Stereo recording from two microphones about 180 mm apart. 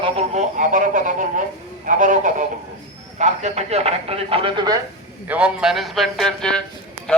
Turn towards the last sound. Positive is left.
turn(degrees=5)  # may be behind; listen again after turning